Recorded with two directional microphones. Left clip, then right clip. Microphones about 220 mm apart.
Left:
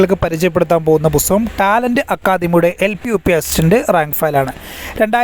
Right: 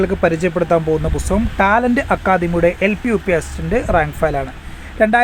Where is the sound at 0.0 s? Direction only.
40° left (ahead or behind).